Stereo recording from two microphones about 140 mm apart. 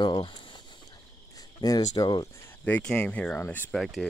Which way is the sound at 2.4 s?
10° left (ahead or behind).